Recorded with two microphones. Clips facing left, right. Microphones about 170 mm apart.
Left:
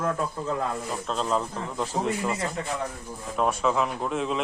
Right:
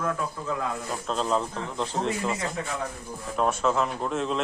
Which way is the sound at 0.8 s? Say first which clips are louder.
Even; centre (ahead or behind).